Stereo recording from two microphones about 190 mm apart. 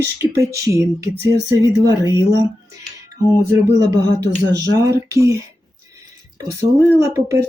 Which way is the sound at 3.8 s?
20° right (ahead or behind).